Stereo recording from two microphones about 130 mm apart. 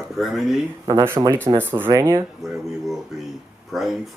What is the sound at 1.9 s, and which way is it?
Speech, 25° right (ahead or behind).